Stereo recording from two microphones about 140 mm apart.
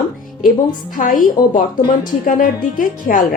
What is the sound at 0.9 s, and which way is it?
A woman's voice, 85° left.